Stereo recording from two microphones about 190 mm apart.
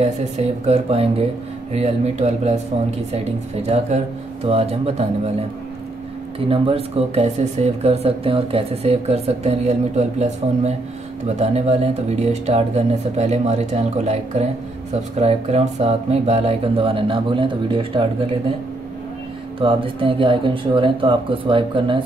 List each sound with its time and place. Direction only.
0.0 s speech: 35° right (ahead or behind)
3.6 s speech: 35° right (ahead or behind)
6.5 s speech: 30° right (ahead or behind)
19.6 s speech: 30° right (ahead or behind)